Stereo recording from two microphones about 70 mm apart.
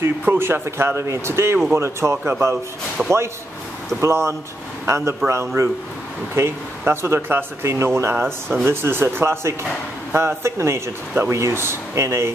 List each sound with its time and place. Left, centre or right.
0.2 s speech: right
3.0 s speech: centre
4.0 s a man's voice: right